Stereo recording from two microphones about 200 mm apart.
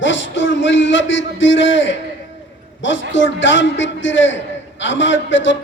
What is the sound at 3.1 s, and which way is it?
A man's voice, 70° left (ahead or behind).